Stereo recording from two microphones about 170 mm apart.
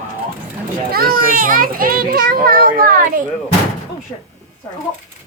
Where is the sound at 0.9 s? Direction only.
60° right (ahead or behind).